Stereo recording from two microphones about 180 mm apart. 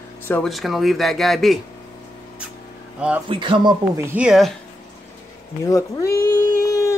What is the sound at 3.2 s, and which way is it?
Speech, 25° right (ahead or behind).